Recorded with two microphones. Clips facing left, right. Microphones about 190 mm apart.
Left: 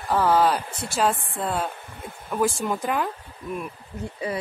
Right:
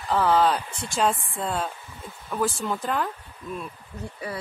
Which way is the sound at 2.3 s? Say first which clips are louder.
Left 3 dB; 15° left (ahead or behind).